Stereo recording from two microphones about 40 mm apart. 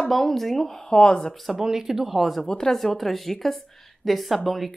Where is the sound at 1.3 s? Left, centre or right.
Centre.